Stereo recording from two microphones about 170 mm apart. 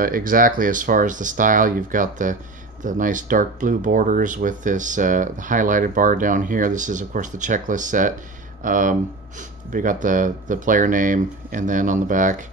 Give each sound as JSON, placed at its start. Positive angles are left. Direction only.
{"t": 0.0, "sound": "speech", "side_deg": -55}